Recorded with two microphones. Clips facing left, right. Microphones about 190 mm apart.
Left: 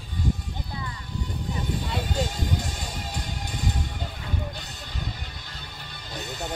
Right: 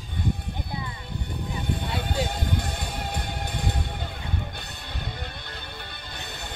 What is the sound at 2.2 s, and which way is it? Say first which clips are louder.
Music: right 1 dB; 60° right (ahead or behind).